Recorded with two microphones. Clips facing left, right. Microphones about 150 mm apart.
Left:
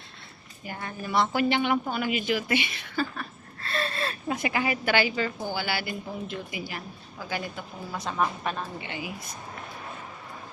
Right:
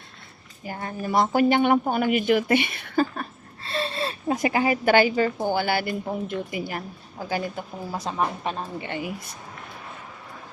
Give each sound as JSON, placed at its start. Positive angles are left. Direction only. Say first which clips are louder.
{"t": 0.6, "sound": "a woman's voice", "louder": "right 5 dB", "side_deg": -35}
{"t": 3.6, "sound": "a sound", "louder": "right 3 dB", "side_deg": -30}
{"t": 4.4, "sound": "a woman's voice", "louder": "right 6 dB", "side_deg": -35}
{"t": 8.2, "sound": "a woman's voice", "louder": "right 1 dB", "side_deg": -25}
{"t": 8.8, "sound": "a woman's voice", "louder": "right 5 dB", "side_deg": -50}